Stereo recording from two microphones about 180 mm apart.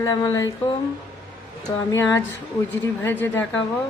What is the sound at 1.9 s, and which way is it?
A woman's voice, 15° left (ahead or behind).